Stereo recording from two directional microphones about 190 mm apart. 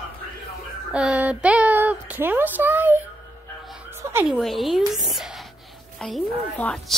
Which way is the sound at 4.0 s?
10° right (ahead or behind).